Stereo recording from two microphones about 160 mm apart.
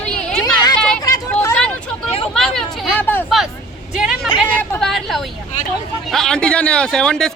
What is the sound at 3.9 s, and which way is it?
Speech, 5° right (ahead or behind).